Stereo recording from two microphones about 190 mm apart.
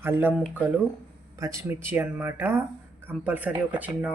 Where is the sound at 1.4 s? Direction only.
15° right (ahead or behind).